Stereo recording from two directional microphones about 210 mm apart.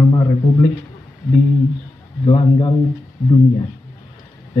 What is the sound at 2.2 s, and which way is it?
Speech, 20° left (ahead or behind).